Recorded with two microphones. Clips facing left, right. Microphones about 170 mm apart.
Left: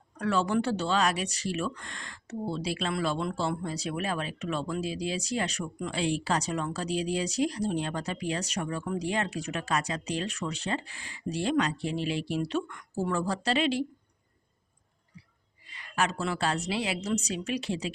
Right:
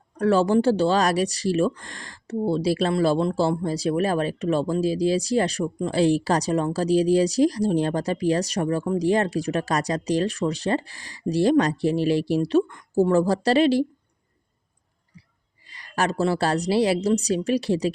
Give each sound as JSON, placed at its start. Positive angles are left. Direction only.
{"t": 0.2, "sound": "speech", "side_deg": -35}
{"t": 15.7, "sound": "speech", "side_deg": -35}